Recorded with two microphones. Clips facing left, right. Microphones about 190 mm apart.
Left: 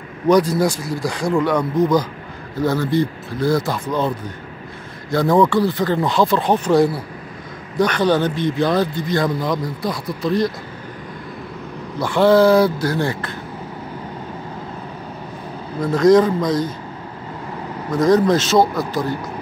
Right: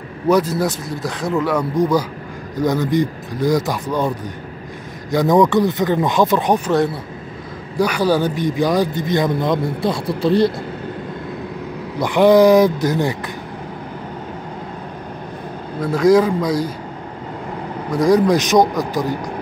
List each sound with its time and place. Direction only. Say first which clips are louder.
0.3 s a man's voice: left 1 dB; 5° right (ahead or behind)
5.1 s a man's voice: right 1 dB; 15° right (ahead or behind)
7.8 s speech: even; 10° right (ahead or behind); by 10.5 s 30° right (ahead or behind)
12.0 s a man's voice: right 2 dB; 15° right (ahead or behind)
15.8 s a man's voice: left 1 dB; 10° right (ahead or behind)
17.9 s a man's voice: right 1 dB; 10° right (ahead or behind)